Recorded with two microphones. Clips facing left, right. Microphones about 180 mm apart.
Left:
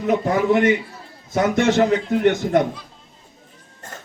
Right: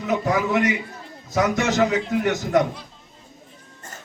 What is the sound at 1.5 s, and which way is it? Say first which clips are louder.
A man's voice: left 5 dB; 55° left (ahead or behind).